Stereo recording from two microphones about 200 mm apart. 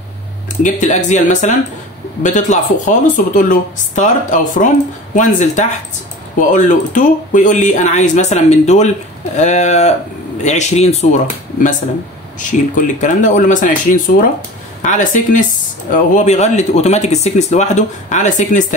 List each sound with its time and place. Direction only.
0.6 s speech: 40° left (ahead or behind)
12.4 s speech: 40° left (ahead or behind)